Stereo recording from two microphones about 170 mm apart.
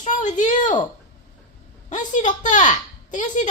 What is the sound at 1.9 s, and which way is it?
A woman's voice, 45° left (ahead or behind).